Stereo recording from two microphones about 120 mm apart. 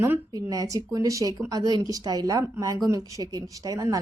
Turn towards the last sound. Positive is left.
turn(degrees=-30)  # may be behind; listen again after turning